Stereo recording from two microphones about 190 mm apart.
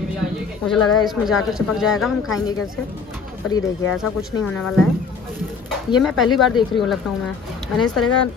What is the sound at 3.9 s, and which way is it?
Speech, centre (ahead or behind).